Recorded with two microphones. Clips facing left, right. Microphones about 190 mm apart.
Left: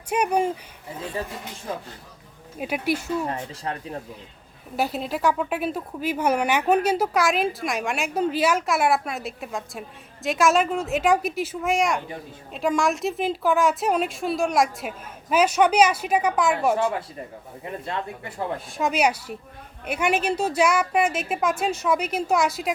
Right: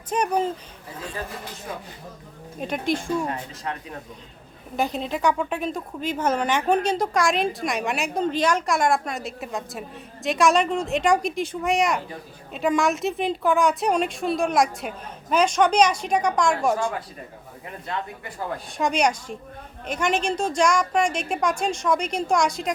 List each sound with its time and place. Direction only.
0.1 s speech: 10° left (ahead or behind)
2.6 s speech: 10° left (ahead or behind)
3.2 s speech: 30° left (ahead or behind)
4.8 s speech: 5° left (ahead or behind)
17.8 s speech: 30° left (ahead or behind)
18.8 s speech: 5° left (ahead or behind)